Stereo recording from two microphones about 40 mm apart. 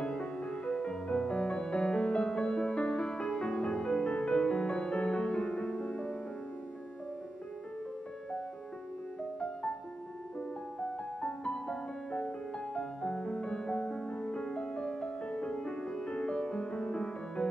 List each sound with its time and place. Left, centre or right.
0.0 s music: centre
0.4 s music: left
2.4 s music: centre
2.7 s music: left
10.8 s music: left